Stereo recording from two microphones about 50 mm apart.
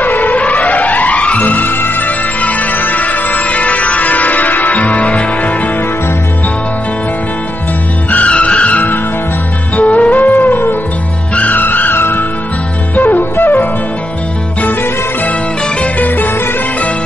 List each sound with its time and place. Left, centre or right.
0.0 s music: left
2.4 s music: left
8.1 s vehicle: left
9.8 s music: left
15.8 s music: left